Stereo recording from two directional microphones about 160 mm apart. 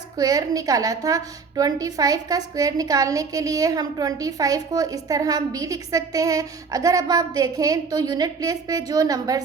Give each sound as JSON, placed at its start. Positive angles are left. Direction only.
{"t": 0.2, "sound": "a woman's voice", "side_deg": -25}